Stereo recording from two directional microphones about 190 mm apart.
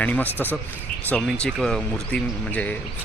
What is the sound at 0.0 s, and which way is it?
Speech, 10° left (ahead or behind).